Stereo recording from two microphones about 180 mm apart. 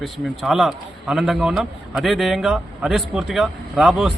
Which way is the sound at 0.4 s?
Centre (ahead or behind).